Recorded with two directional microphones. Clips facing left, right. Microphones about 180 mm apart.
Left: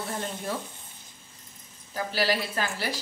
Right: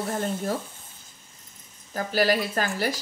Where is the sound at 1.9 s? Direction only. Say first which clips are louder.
Right 4 dB; 50° right (ahead or behind).